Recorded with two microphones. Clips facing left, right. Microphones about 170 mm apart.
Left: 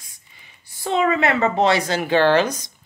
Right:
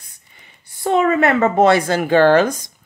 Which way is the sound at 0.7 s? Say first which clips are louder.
Right 4 dB; 50° right (ahead or behind).